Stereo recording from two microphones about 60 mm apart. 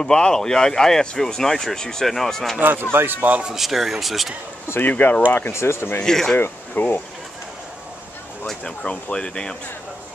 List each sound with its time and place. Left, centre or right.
0.0 s speech: centre
2.6 s speech: right
3.4 s speech: centre
4.6 s speech: left
5.3 s speech: left
6.0 s speech: centre
6.3 s speech: left
8.5 s speech: centre